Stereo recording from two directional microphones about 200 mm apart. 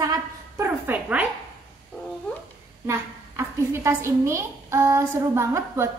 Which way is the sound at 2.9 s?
15° right (ahead or behind).